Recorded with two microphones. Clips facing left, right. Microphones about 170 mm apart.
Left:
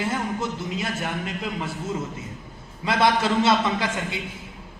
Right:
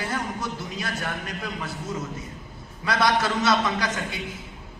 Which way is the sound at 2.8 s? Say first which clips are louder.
Left 2 dB; 25° left (ahead or behind).